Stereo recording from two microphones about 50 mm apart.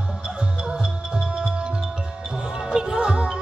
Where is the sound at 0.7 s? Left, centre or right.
Centre.